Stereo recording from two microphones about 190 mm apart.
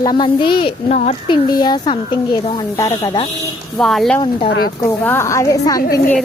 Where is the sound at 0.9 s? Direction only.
35° left (ahead or behind).